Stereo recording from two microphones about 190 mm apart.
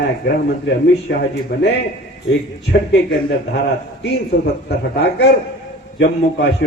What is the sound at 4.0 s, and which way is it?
Speech, 60° left (ahead or behind).